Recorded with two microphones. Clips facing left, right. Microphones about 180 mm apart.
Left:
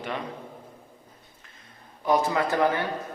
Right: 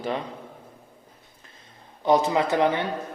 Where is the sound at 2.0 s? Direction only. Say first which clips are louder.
Right 3 dB; 25° right (ahead or behind).